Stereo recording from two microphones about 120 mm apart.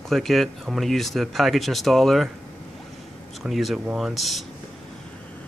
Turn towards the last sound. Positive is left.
turn(degrees=0)  # may be behind; listen again after turning